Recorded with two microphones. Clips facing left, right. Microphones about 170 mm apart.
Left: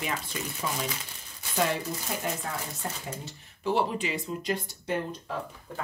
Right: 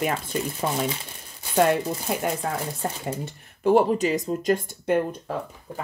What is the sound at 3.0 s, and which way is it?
Speech, 55° right (ahead or behind).